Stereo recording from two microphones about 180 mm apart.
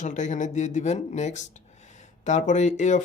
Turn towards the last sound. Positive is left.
turn(degrees=40)  # may be behind; listen again after turning